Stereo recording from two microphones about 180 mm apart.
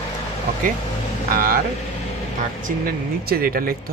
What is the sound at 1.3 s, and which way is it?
Speech, 55° right (ahead or behind).